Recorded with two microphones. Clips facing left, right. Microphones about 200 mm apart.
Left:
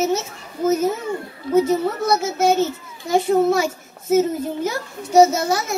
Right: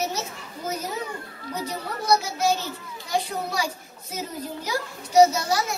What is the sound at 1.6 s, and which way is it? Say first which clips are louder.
Speech: left 14 dB; 25° left (ahead or behind).